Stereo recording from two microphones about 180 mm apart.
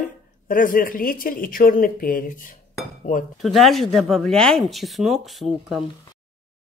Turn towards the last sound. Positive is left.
turn(degrees=0)  # may be behind; listen again after turning